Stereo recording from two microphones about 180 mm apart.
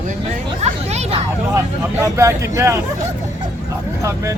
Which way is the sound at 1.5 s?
15° right (ahead or behind).